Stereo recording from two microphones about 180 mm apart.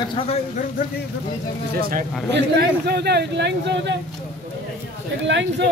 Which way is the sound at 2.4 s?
65° right (ahead or behind).